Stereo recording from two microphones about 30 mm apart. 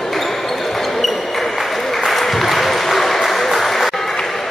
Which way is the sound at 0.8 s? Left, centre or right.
Centre.